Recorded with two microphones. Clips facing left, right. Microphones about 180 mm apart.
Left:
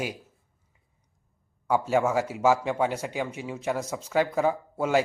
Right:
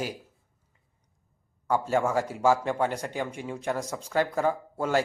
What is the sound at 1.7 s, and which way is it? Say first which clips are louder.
Speech: left 2 dB; 10° left (ahead or behind).